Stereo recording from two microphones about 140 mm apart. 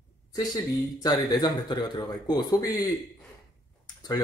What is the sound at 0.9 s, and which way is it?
Speech, 30° left (ahead or behind).